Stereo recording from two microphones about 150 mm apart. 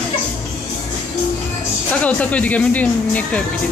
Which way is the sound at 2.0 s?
10° left (ahead or behind).